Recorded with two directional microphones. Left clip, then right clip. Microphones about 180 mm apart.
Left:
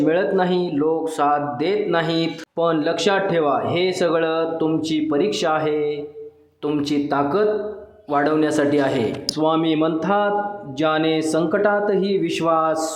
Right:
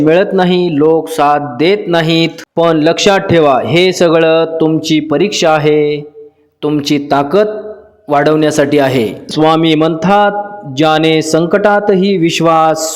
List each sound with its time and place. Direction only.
0.0 s a man's voice: 40° right (ahead or behind)